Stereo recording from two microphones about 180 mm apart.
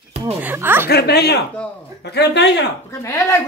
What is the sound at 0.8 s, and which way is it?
Speech, 60° left (ahead or behind).